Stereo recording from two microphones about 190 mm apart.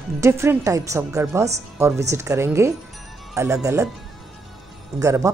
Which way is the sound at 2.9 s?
Centre (ahead or behind).